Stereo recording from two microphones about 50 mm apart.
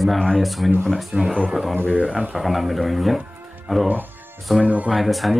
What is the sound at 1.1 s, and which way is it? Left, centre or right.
Speech, right.